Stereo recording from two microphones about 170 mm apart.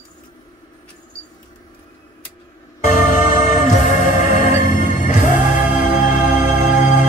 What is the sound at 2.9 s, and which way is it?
Music, 45° left (ahead or behind).